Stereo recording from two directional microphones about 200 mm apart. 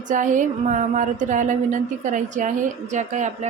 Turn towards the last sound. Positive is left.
turn(degrees=-35)  # may be behind; listen again after turning